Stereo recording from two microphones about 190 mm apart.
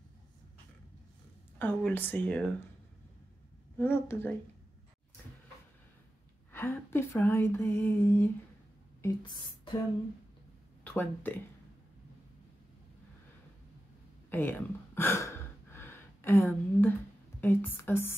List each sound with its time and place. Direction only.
1.6 s speech: 10° left (ahead or behind)
3.7 s speech: 10° left (ahead or behind)
6.5 s speech: 10° left (ahead or behind)
9.0 s speech: 25° left (ahead or behind)
10.8 s speech: 10° left (ahead or behind)
14.3 s gasp: 10° left (ahead or behind)
17.4 s speech: 10° left (ahead or behind)